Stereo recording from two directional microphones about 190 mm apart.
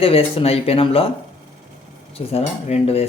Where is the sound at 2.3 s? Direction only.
35° left (ahead or behind).